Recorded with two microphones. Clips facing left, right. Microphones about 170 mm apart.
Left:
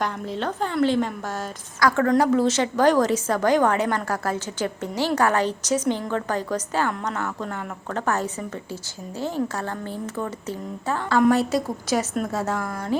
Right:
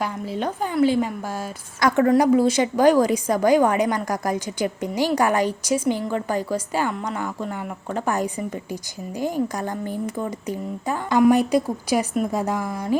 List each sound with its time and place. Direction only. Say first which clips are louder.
0.0 s a woman's voice: right 1 dB; 10° right (ahead or behind)
1.8 s a woman's voice: right 2 dB; 20° right (ahead or behind)
12.5 s speech: right 2 dB; centre (ahead or behind)